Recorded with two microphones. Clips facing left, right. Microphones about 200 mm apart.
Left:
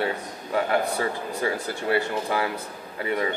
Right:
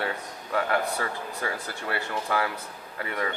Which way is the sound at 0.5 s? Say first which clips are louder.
Left 3 dB; 20° left (ahead or behind).